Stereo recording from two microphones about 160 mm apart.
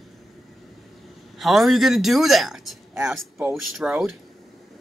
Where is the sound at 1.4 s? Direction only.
Centre (ahead or behind).